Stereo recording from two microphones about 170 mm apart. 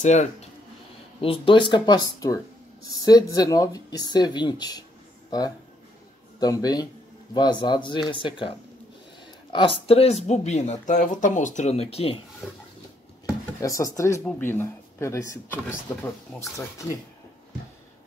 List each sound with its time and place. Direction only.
0.0 s speech: 45° left (ahead or behind)
1.2 s speech: 30° left (ahead or behind)
6.4 s speech: 20° left (ahead or behind)
12.4 s a sound: centre (ahead or behind)
13.6 s speech: 20° left (ahead or behind)